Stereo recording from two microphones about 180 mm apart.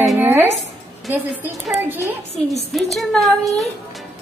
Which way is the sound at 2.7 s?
Centre (ahead or behind).